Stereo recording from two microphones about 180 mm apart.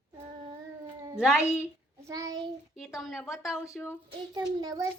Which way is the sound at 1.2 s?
5° right (ahead or behind).